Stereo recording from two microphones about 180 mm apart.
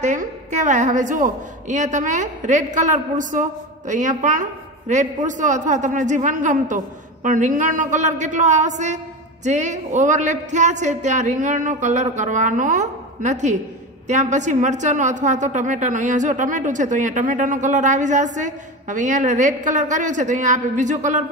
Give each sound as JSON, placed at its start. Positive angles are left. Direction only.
{"t": 0.0, "sound": "a woman's voice", "side_deg": -40}